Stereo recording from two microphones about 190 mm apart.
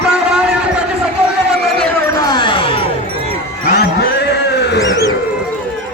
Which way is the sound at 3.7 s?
60° left (ahead or behind).